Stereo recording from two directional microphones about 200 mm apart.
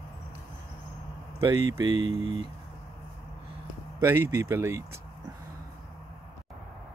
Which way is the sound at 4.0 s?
10° right (ahead or behind).